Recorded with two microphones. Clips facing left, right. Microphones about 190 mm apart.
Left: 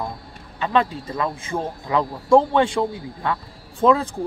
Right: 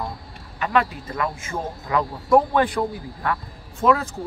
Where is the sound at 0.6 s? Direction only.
25° left (ahead or behind).